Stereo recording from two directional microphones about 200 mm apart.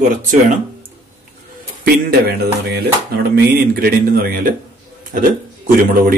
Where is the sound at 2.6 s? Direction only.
50° right (ahead or behind).